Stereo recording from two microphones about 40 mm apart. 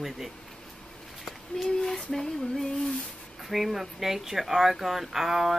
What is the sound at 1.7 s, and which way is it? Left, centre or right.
Female singing, centre.